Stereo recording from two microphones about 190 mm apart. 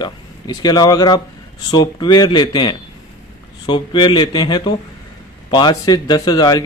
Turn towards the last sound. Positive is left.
turn(degrees=20)  # may be behind; listen again after turning